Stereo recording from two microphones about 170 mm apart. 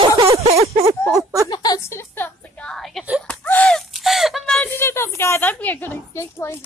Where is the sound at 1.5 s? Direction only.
25° left (ahead or behind).